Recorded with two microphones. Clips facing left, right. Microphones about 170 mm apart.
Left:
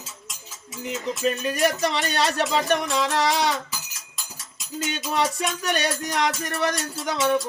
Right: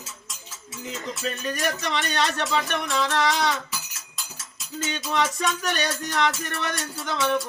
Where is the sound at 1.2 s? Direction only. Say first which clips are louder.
Left 7 dB; 30° left (ahead or behind).